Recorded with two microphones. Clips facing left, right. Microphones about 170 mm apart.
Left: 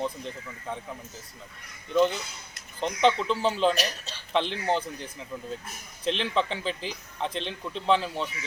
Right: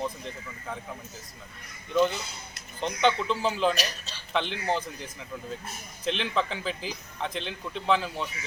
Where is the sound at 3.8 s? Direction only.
55° left (ahead or behind).